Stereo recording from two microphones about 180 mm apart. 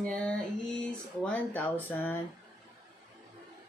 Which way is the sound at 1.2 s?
10° left (ahead or behind).